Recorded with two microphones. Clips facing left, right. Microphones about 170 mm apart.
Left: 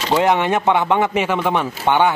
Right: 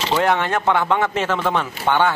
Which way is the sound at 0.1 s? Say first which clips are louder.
Left 3 dB; 15° left (ahead or behind).